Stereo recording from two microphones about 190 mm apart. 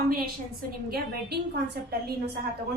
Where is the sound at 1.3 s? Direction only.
60° right (ahead or behind).